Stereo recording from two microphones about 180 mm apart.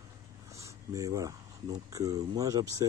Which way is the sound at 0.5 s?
20° right (ahead or behind).